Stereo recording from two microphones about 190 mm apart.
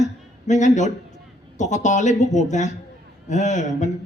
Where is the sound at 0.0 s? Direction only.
40° left (ahead or behind).